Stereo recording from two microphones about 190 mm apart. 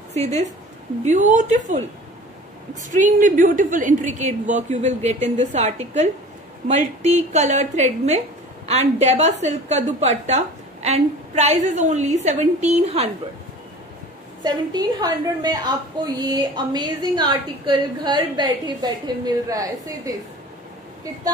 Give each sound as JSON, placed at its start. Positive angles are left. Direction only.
{"t": 0.1, "sound": "a woman's voice", "side_deg": -35}
{"t": 2.9, "sound": "a woman's voice", "side_deg": -45}
{"t": 14.4, "sound": "a woman's voice", "side_deg": -20}